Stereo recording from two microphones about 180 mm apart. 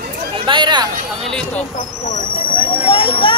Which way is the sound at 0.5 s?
25° right (ahead or behind).